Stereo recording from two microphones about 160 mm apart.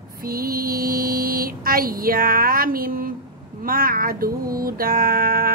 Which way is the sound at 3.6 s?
65° right (ahead or behind).